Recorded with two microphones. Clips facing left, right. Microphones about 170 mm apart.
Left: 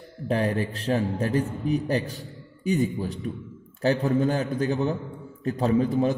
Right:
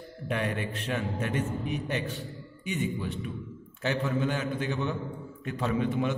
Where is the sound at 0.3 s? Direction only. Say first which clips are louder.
Left 6 dB; 35° left (ahead or behind).